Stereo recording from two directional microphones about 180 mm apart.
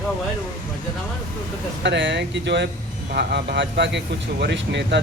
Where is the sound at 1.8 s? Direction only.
75° right (ahead or behind).